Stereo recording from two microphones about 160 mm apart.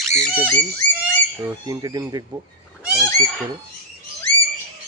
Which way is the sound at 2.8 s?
5° right (ahead or behind).